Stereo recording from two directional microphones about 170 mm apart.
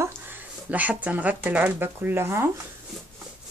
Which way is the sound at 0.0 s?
10° right (ahead or behind).